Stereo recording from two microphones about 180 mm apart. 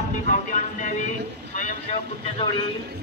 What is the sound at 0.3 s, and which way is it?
Speech, 45° left (ahead or behind).